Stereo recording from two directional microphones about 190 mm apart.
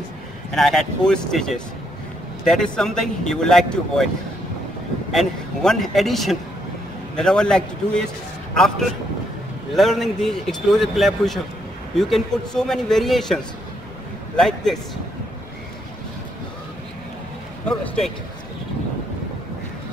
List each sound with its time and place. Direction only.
0.5 s a man's voice: centre (ahead or behind)
5.1 s a man's voice: centre (ahead or behind)
17.6 s a man's voice: 5° left (ahead or behind)